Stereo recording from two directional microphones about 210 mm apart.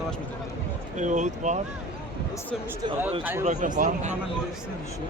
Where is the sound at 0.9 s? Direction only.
35° right (ahead or behind).